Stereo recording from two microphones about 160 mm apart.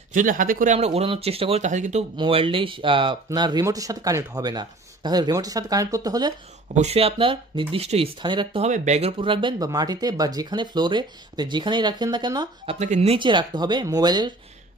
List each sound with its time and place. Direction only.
0.1 s speech: 55° right (ahead or behind)
0.7 s speech: 40° right (ahead or behind)
2.1 s speech: 35° right (ahead or behind)
6.7 s speech: 45° right (ahead or behind)
8.6 s speech: 45° right (ahead or behind)
9.2 s speech: 30° right (ahead or behind)
12.7 s speech: 45° right (ahead or behind); by 14.3 s 25° right (ahead or behind)